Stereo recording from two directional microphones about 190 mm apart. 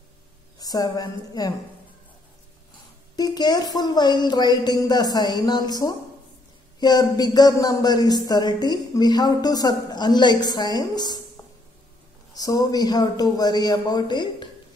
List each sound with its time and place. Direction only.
0.6 s speech: 20° left (ahead or behind)
3.2 s speech: 20° left (ahead or behind)
12.4 s speech: 20° left (ahead or behind)